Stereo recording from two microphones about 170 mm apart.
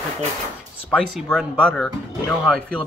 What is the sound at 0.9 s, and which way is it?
Speech, 5° left (ahead or behind).